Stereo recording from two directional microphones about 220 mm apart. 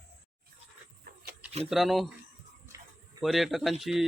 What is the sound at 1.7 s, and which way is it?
Speech, centre (ahead or behind).